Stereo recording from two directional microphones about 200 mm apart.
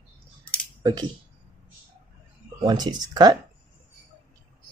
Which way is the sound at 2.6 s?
20° right (ahead or behind).